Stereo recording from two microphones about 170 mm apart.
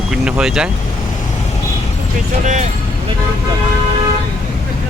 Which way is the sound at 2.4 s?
45° right (ahead or behind).